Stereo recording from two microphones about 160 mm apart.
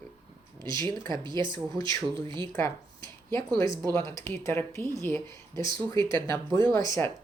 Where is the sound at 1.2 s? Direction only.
30° right (ahead or behind).